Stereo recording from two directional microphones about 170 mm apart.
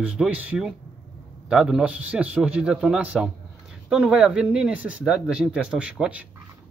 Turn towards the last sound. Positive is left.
turn(degrees=-5)  # may be behind; listen again after turning